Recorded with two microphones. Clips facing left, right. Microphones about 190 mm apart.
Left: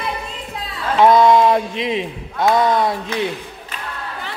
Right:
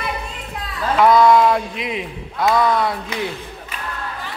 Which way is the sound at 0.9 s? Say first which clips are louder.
Left 1 dB; 25° left (ahead or behind).